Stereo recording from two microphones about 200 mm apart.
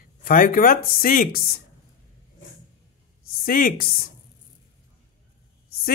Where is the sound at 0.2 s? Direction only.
45° left (ahead or behind).